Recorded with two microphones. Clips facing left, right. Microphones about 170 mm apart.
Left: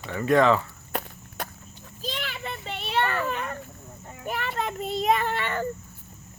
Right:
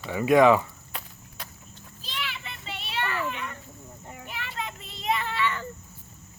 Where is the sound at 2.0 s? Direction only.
45° left (ahead or behind).